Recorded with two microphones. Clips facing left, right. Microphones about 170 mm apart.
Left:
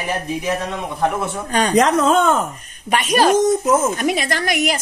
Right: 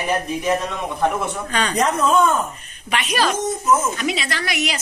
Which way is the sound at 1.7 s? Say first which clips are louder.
Left 3 dB; 90° left.